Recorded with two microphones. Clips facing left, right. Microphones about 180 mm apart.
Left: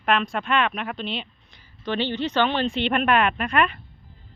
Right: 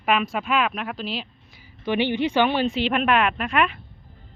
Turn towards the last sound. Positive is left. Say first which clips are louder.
# even
turn(degrees=0)  # may be behind; listen again after turning